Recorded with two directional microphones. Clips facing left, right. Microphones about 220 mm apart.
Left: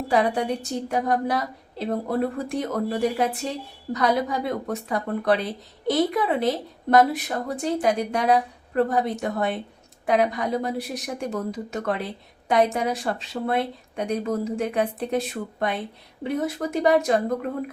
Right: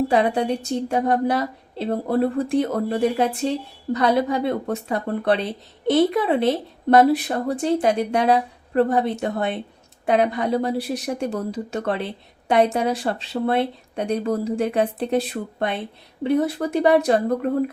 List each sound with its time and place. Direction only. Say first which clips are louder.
0.1 s speech: right 3 dB; 25° right (ahead or behind)